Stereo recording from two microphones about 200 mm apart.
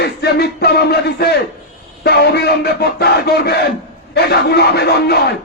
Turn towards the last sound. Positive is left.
turn(degrees=55)  # may be behind; listen again after turning